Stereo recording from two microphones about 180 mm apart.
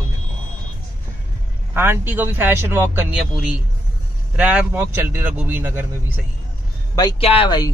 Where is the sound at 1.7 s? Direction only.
10° right (ahead or behind).